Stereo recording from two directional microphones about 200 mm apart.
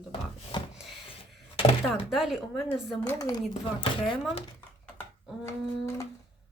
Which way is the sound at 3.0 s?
15° left (ahead or behind).